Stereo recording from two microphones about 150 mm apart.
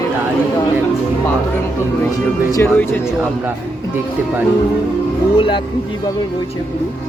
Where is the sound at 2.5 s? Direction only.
15° left (ahead or behind).